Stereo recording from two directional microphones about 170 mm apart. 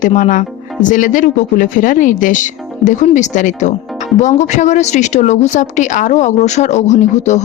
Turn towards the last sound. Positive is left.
turn(degrees=45)  # may be behind; listen again after turning